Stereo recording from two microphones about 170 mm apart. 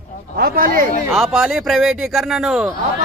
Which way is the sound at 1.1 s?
Centre (ahead or behind).